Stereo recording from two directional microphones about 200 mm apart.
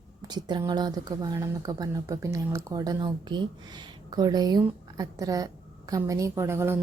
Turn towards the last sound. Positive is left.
turn(degrees=-10)  # may be behind; listen again after turning